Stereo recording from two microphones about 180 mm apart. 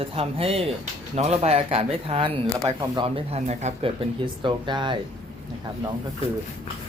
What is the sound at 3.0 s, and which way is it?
Speech, 35° right (ahead or behind).